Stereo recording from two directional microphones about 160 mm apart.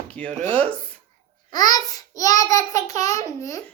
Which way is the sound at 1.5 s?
25° left (ahead or behind).